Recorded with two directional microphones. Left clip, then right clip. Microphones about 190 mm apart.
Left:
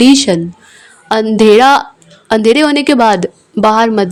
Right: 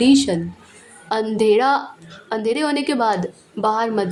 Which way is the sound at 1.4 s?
45° left (ahead or behind).